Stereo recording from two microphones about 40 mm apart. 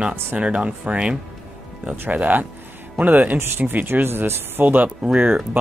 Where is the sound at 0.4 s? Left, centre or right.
Right.